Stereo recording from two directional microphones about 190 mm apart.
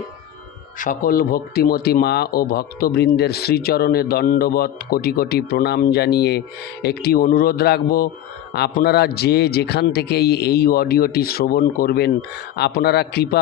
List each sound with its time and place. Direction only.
0.8 s a man's voice: 50° left (ahead or behind)